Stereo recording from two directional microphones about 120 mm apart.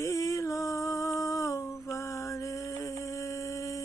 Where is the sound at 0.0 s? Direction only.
25° left (ahead or behind).